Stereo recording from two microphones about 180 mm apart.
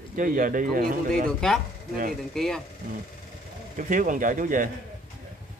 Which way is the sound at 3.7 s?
45° right (ahead or behind).